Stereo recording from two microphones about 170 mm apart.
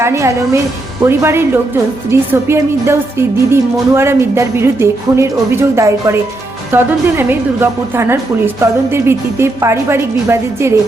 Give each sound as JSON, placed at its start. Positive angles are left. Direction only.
{"t": 0.0, "sound": "speech", "side_deg": -15}